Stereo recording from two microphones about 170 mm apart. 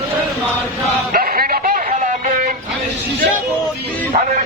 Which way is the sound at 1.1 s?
60° right (ahead or behind).